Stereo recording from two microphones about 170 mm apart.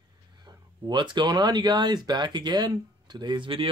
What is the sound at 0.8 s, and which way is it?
Speech, 25° right (ahead or behind).